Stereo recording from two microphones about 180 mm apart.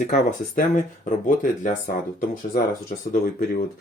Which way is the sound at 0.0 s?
45° left (ahead or behind).